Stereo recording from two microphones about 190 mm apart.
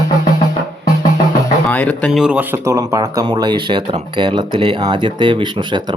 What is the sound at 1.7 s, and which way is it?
Speech, 5° left (ahead or behind).